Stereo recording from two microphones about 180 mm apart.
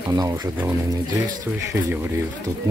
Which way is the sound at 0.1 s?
20° right (ahead or behind).